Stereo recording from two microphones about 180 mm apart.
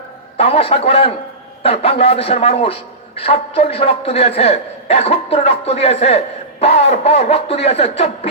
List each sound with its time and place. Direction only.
0.3 s a man's voice: 30° left (ahead or behind)